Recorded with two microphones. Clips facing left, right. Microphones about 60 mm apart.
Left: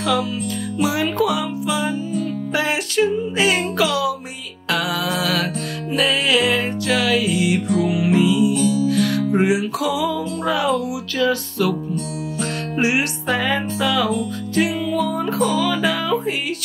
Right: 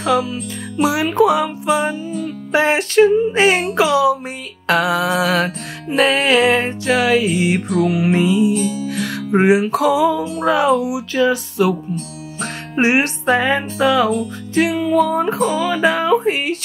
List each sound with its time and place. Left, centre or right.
0.0 s music: right
1.3 s speech: right
3.6 s music: right
5.9 s speech: right
7.0 s music: right
8.5 s music: right
9.4 s speech: right
10.7 s music: right
12.7 s music: right
15.3 s music: centre
15.6 s music: right